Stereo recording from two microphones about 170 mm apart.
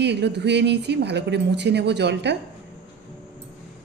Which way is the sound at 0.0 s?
85° right.